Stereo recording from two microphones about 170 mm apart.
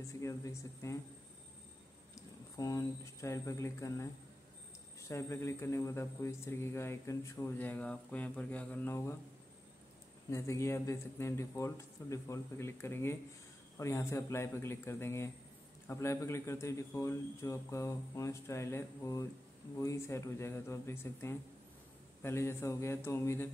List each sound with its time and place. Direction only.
0.2 s a man's voice: 20° left (ahead or behind)
2.5 s a man's voice: 20° left (ahead or behind)
10.3 s a man's voice: 15° left (ahead or behind)